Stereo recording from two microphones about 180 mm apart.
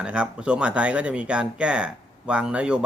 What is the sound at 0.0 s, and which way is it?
Speech, 5° right (ahead or behind).